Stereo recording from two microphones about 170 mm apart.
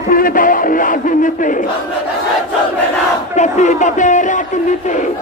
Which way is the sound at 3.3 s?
45° left (ahead or behind).